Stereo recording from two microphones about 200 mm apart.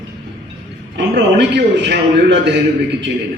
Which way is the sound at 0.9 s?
60° right (ahead or behind).